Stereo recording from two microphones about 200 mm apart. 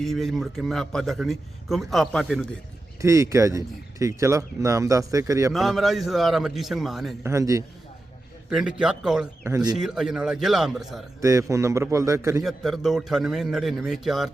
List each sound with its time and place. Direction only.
0.0 s a man's voice: centre (ahead or behind)
3.0 s speech: 15° right (ahead or behind)
5.5 s a man's voice: centre (ahead or behind)
7.2 s speech: 15° right (ahead or behind)
8.4 s a man's voice: 5° right (ahead or behind)
9.7 s a man's voice: 5° right (ahead or behind)
11.2 s speech: 15° right (ahead or behind)
12.4 s a man's voice: centre (ahead or behind)